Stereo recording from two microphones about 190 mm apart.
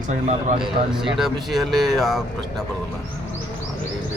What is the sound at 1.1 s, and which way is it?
Speech, centre (ahead or behind).